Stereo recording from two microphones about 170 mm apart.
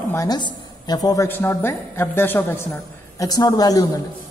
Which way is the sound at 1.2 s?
10° left (ahead or behind).